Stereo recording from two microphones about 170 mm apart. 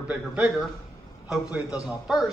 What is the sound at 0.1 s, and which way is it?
A man's voice, centre (ahead or behind).